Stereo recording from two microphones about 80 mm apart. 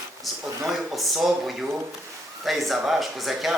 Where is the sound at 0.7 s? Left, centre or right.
Centre.